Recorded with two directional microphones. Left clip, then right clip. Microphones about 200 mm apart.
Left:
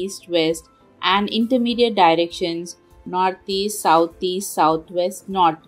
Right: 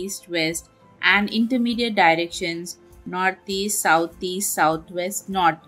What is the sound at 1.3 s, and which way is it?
Speech, 5° left (ahead or behind).